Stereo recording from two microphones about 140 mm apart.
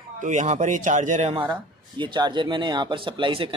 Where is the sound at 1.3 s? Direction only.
35° right (ahead or behind).